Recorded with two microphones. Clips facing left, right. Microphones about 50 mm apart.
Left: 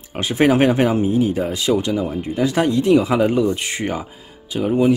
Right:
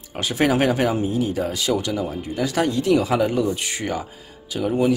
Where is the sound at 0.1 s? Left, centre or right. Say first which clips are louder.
Left 4 dB; left.